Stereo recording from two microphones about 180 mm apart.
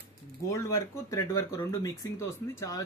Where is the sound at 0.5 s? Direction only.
15° left (ahead or behind).